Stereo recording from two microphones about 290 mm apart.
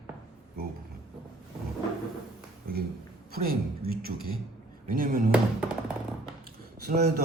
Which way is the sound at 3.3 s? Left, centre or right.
Right.